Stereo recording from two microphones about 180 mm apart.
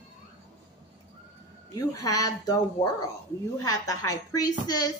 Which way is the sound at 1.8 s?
20° left (ahead or behind).